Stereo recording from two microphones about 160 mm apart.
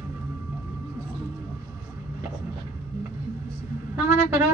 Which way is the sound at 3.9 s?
15° right (ahead or behind).